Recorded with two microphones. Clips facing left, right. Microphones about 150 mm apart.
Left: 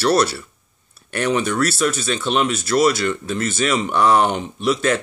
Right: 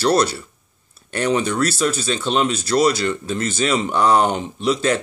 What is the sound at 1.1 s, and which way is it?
Speech, 30° right (ahead or behind).